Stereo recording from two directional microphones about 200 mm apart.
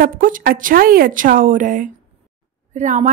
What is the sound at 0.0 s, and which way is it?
A woman's voice, 45° right (ahead or behind).